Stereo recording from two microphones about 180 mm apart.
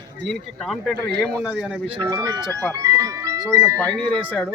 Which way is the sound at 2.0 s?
20° right (ahead or behind).